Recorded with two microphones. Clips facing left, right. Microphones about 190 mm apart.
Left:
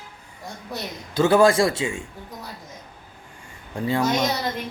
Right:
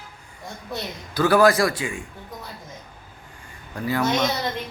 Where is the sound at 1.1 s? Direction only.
25° left (ahead or behind).